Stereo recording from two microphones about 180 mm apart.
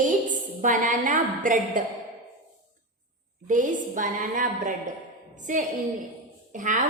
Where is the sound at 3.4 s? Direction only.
45° right (ahead or behind).